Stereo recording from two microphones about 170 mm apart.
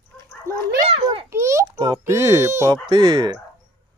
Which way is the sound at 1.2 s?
15° right (ahead or behind).